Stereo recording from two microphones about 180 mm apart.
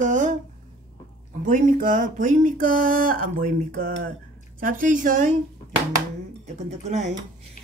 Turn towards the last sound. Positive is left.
turn(degrees=-40)  # may be behind; listen again after turning